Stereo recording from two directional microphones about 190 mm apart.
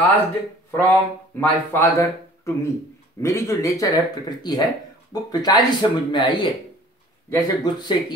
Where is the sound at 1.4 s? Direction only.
15° left (ahead or behind).